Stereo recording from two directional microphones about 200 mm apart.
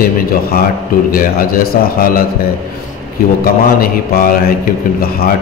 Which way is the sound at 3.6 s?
45° left (ahead or behind).